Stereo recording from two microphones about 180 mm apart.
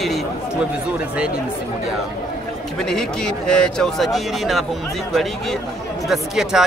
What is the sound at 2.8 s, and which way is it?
A man's voice, 5° left (ahead or behind).